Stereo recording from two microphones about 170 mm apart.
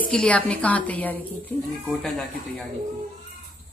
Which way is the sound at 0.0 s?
5° left (ahead or behind).